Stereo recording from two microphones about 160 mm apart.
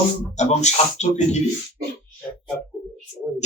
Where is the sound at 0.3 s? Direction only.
45° left (ahead or behind).